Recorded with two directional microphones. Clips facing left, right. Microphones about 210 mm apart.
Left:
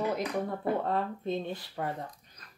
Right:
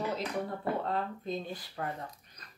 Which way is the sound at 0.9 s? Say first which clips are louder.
Left 3 dB; 25° left (ahead or behind).